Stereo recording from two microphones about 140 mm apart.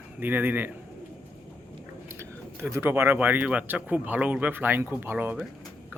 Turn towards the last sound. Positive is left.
turn(degrees=-10)  # may be behind; listen again after turning